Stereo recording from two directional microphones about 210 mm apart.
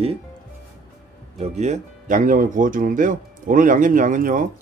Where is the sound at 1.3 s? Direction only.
35° right (ahead or behind).